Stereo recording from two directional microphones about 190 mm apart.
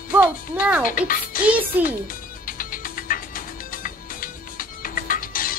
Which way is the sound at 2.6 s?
50° left (ahead or behind).